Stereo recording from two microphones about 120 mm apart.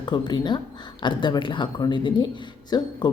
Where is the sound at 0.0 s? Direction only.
40° left (ahead or behind).